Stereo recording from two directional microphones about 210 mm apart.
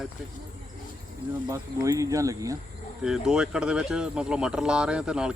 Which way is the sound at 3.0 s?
5° right (ahead or behind).